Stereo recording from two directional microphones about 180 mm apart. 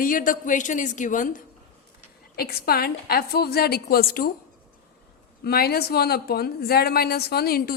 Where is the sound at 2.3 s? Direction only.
60° left (ahead or behind).